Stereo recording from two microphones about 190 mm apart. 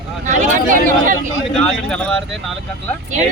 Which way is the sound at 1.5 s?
5° left (ahead or behind).